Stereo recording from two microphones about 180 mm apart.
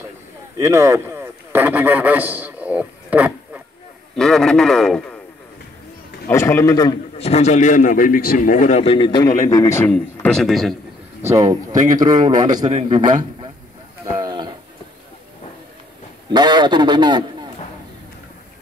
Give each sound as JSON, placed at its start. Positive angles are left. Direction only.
{"t": 0.6, "sound": "a man's voice", "side_deg": -15}
{"t": 4.1, "sound": "a man's voice", "side_deg": 5}
{"t": 6.2, "sound": "a man's voice", "side_deg": 15}
{"t": 7.2, "sound": "a man's voice", "side_deg": 35}
{"t": 11.2, "sound": "a man's voice", "side_deg": -20}
{"t": 14.1, "sound": "a sound", "side_deg": -25}
{"t": 16.3, "sound": "a man's voice", "side_deg": -25}